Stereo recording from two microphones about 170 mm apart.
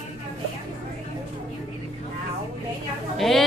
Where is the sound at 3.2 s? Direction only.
Centre (ahead or behind).